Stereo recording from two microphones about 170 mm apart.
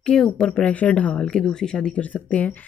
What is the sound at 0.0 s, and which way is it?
A woman's voice, 5° left (ahead or behind).